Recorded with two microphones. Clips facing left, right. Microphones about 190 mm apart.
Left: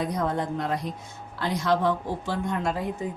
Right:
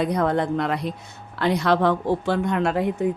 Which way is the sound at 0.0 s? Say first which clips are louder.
Right 6 dB; 70° right (ahead or behind).